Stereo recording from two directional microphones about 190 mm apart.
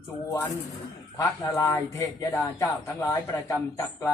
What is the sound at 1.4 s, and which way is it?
Speech, 15° left (ahead or behind).